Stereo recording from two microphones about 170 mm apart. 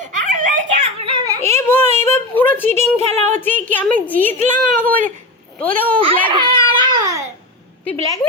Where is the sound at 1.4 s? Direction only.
15° left (ahead or behind).